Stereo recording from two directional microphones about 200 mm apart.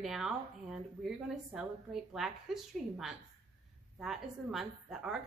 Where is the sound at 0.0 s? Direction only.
Centre (ahead or behind).